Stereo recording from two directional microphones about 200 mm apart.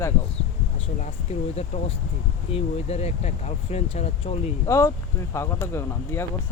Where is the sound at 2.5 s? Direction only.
30° left (ahead or behind).